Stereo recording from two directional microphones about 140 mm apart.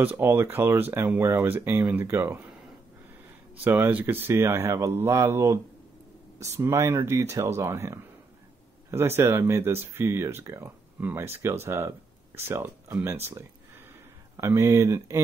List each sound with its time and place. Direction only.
0.0 s speech: 15° right (ahead or behind)
3.6 s speech: 15° right (ahead or behind)
6.6 s speech: 15° right (ahead or behind)